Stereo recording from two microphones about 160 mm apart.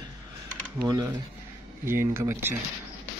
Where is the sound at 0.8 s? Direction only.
25° right (ahead or behind).